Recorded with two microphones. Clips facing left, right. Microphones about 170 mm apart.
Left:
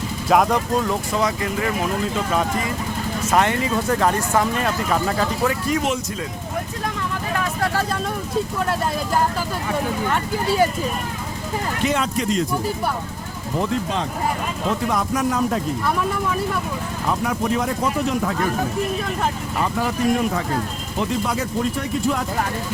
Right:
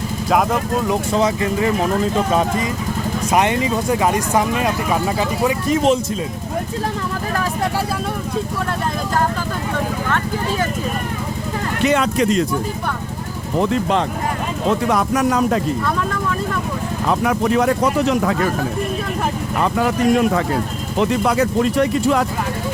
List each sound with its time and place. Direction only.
0.3 s speech: centre (ahead or behind)
1.1 s speech: 25° right (ahead or behind)
3.3 s speech: 20° right (ahead or behind)
11.9 s speech: 70° right (ahead or behind)
14.8 s speech: 75° right (ahead or behind)
17.1 s speech: 70° right (ahead or behind)
19.6 s speech: 75° right (ahead or behind)